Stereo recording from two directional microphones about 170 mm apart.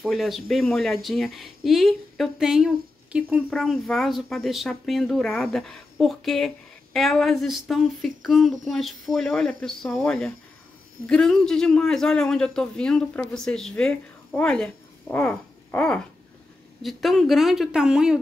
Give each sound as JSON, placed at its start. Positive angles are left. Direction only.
{"t": 0.0, "sound": "a woman's voice", "side_deg": 0}